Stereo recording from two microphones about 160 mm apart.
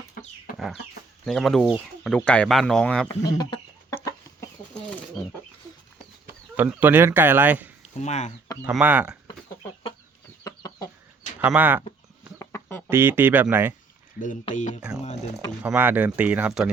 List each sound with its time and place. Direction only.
0.5 s chicken: centre (ahead or behind)
1.2 s speech: centre (ahead or behind)
3.1 s chicken: 30° left (ahead or behind)
6.6 s speech: 10° right (ahead or behind)
7.8 s a sound: 45° left (ahead or behind)
8.6 s speech: 10° right (ahead or behind)
10.4 s chicken: 20° left (ahead or behind)
11.4 s speech: 10° right (ahead or behind)
12.4 s chicken: 15° left (ahead or behind)
12.9 s speech: 15° right (ahead or behind)
14.5 s speech: 50° left (ahead or behind)
14.8 s speech: 5° right (ahead or behind)
15.0 s a sound: 45° left (ahead or behind)
15.6 s speech: 10° right (ahead or behind)